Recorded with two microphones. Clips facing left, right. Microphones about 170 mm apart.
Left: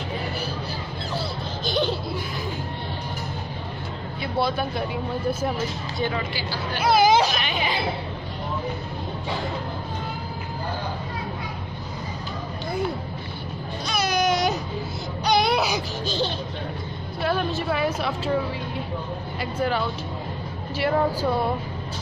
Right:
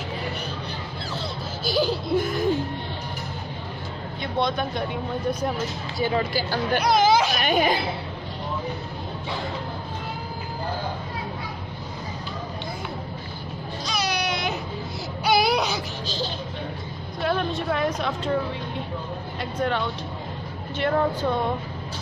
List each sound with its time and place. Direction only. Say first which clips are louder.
1.6 s a sound: right 1 dB; 5° right (ahead or behind)
2.1 s music: right 8 dB; 50° right (ahead or behind)
4.2 s speech: even; 5° left (ahead or behind)
6.1 s speech: right 5 dB; 45° right (ahead or behind)
6.8 s a woman's voice: left 3 dB; 5° left (ahead or behind)
7.3 s speech: right 5 dB; 45° right (ahead or behind)
13.8 s baby cry: left 5 dB; 50° left (ahead or behind)
15.2 s baby cry: even; 5° right (ahead or behind)
17.2 s a woman's voice: even; 5° left (ahead or behind)
19.4 s a woman's voice: left 1 dB; 5° left (ahead or behind)